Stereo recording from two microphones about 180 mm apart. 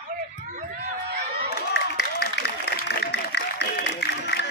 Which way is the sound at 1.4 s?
65° left (ahead or behind).